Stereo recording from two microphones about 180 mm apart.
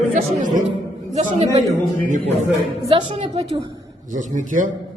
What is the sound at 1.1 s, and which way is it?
A man's voice, 35° right (ahead or behind).